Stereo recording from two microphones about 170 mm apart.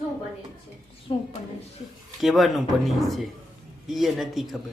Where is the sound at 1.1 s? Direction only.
30° left (ahead or behind).